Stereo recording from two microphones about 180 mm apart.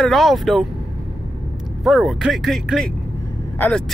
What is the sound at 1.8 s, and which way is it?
Speech, centre (ahead or behind).